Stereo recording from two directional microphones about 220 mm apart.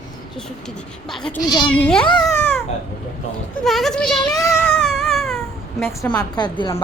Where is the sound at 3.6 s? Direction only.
Centre (ahead or behind).